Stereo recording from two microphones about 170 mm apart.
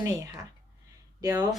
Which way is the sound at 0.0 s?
20° right (ahead or behind).